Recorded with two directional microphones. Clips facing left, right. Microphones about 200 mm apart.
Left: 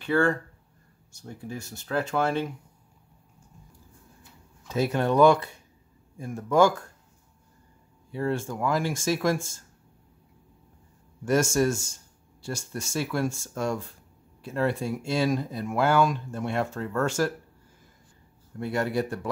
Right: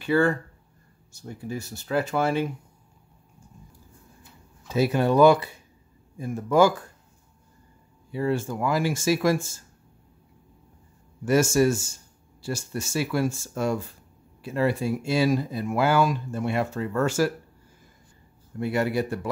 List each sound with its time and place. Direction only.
0.0 s speech: 5° right (ahead or behind)
4.6 s speech: 5° right (ahead or behind)
8.1 s speech: 5° right (ahead or behind)
11.2 s speech: 5° right (ahead or behind)
18.6 s speech: 5° right (ahead or behind)